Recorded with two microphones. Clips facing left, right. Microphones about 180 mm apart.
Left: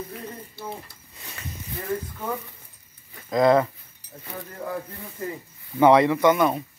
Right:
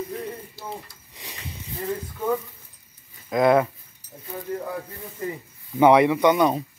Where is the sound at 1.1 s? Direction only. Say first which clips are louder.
Right 1 dB; 15° right (ahead or behind).